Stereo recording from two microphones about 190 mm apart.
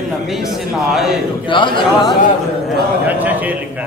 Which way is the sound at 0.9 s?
Centre (ahead or behind).